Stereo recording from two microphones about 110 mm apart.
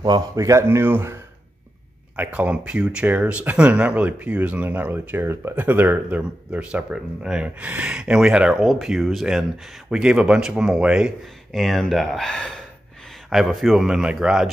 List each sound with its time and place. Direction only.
0.0 s speech: 35° right (ahead or behind)
2.1 s speech: 10° right (ahead or behind)